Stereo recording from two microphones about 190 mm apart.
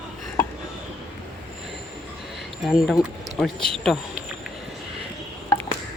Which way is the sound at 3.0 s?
Centre (ahead or behind).